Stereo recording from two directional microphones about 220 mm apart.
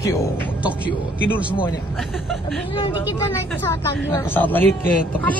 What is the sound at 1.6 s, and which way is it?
Speech, 20° left (ahead or behind).